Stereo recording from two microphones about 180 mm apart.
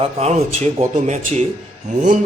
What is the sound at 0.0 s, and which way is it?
A man's voice, 35° right (ahead or behind).